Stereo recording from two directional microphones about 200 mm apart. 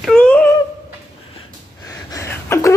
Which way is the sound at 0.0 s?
5° left (ahead or behind).